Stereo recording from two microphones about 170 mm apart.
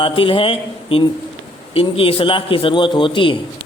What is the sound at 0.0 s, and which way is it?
Speech, 30° left (ahead or behind).